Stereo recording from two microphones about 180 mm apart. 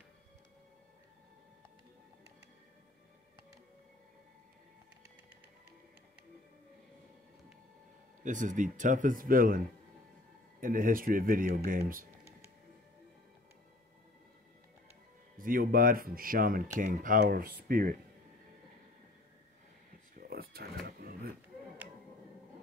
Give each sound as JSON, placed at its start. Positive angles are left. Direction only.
{"t": 8.2, "sound": "speech", "side_deg": -45}
{"t": 10.6, "sound": "speech", "side_deg": -50}
{"t": 15.3, "sound": "speech", "side_deg": -50}
{"t": 20.2, "sound": "a sound", "side_deg": -55}